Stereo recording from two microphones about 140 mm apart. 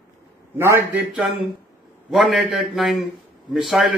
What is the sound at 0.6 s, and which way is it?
Speech, 15° right (ahead or behind).